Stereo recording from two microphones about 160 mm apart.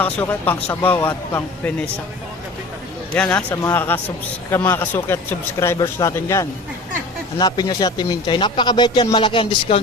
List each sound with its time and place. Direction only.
0.0 s a man's voice: 10° left (ahead or behind)
3.2 s a man's voice: 10° left (ahead or behind); by 9.8 s 35° left (ahead or behind)